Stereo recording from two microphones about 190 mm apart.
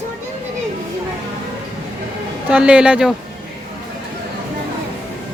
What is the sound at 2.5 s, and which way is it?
Speech, 5° right (ahead or behind).